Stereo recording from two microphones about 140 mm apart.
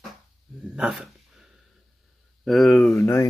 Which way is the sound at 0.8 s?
5° right (ahead or behind).